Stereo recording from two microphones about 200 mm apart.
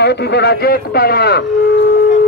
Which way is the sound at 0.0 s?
55° left (ahead or behind).